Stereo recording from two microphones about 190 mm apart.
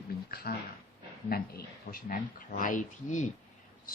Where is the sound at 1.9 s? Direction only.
45° left (ahead or behind).